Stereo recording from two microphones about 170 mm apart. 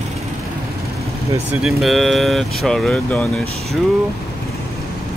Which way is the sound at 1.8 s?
Centre (ahead or behind).